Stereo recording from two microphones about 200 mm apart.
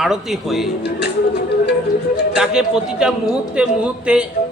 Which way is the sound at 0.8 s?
55° left (ahead or behind).